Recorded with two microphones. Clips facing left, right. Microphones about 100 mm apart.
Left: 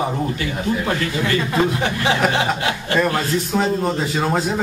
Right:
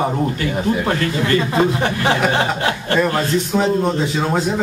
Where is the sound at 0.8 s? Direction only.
40° right (ahead or behind).